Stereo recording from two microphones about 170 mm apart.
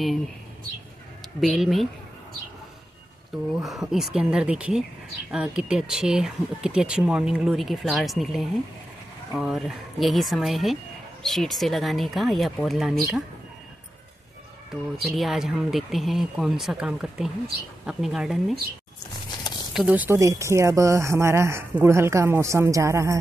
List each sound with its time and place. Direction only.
1.4 s speech: centre (ahead or behind)
3.5 s speech: centre (ahead or behind)
14.7 s speech: centre (ahead or behind)
19.7 s speech: 5° right (ahead or behind)